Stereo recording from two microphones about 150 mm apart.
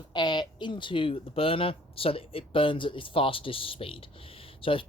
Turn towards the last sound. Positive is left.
turn(degrees=35)  # may be behind; listen again after turning